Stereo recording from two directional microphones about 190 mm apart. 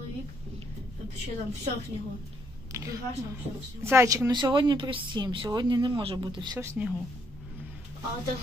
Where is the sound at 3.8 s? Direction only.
15° right (ahead or behind).